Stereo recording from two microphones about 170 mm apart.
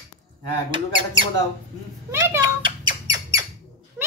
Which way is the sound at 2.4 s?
25° right (ahead or behind).